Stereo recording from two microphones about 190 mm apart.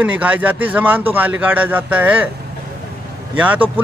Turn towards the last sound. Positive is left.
turn(degrees=-5)  # may be behind; listen again after turning